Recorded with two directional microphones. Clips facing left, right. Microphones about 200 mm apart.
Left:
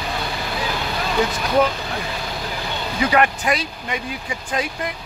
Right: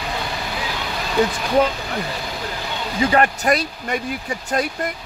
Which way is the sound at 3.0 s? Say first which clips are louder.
Right 1 dB; 35° right (ahead or behind).